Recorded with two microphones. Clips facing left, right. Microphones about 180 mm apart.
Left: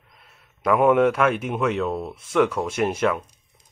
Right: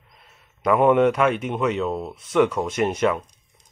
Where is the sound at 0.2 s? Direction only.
5° left (ahead or behind).